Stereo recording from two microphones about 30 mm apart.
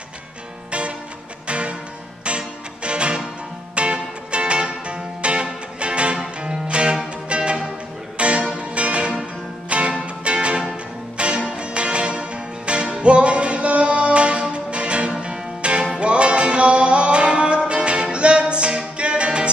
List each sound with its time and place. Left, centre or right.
0.7 s music: right